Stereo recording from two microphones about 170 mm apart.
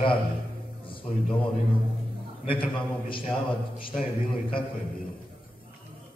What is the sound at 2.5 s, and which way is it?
Speech, 30° left (ahead or behind).